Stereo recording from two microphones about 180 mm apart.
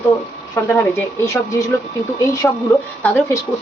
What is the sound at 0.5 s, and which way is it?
Speech, 15° left (ahead or behind).